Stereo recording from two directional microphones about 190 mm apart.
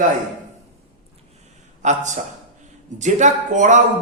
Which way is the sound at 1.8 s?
40° right (ahead or behind).